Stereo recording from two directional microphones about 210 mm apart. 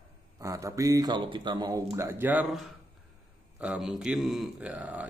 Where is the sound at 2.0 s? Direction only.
10° right (ahead or behind).